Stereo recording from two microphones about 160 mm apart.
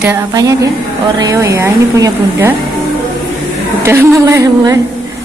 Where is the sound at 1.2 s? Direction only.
20° right (ahead or behind).